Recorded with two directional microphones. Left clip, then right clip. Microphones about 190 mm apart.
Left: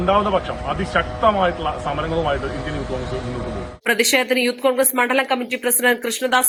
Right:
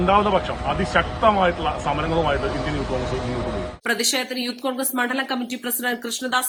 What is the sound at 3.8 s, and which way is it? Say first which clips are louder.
A woman's voice: left 6 dB; 25° left (ahead or behind).